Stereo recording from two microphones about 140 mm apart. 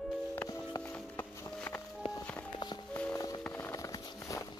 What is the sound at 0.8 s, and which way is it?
Music, 10° left (ahead or behind).